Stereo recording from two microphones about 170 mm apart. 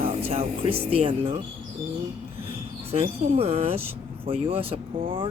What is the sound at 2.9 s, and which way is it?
Speech, 35° right (ahead or behind).